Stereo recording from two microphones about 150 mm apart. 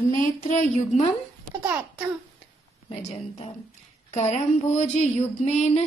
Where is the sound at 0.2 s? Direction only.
55° left (ahead or behind).